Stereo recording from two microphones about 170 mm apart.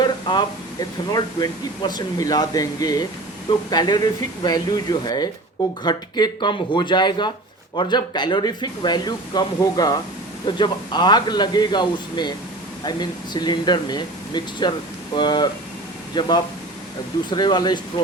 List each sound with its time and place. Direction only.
0.0 s a sound: 25° left (ahead or behind)
1.1 s speech: 25° left (ahead or behind)
17.3 s speech: 25° left (ahead or behind)